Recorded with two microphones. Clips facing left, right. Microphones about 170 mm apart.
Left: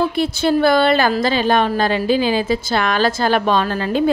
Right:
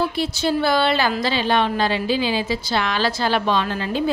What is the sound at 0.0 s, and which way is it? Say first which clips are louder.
A woman's voice: left 4 dB; 55° left (ahead or behind).